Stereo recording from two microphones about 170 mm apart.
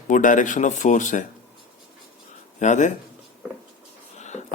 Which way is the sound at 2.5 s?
45° left (ahead or behind).